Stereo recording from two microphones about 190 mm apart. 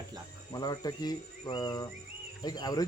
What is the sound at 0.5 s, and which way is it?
Speech, 20° left (ahead or behind).